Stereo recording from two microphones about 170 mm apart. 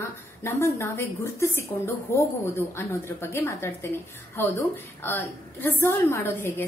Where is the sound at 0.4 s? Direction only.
15° left (ahead or behind).